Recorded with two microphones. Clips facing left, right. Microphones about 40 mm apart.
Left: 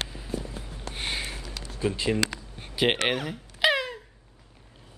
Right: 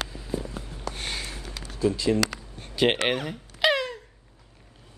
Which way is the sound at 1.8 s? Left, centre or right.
Left.